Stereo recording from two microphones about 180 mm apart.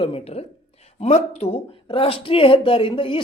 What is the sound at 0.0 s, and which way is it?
A man's voice, 30° left (ahead or behind).